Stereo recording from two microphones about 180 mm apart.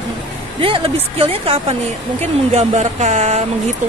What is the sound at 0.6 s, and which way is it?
Speech, 30° right (ahead or behind).